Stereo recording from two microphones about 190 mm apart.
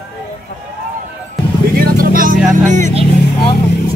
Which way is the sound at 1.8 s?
50° right (ahead or behind).